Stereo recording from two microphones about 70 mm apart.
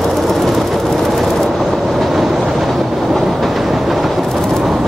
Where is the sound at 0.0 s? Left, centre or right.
Centre.